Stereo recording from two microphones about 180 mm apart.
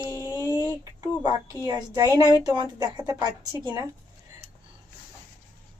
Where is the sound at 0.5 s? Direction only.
25° left (ahead or behind).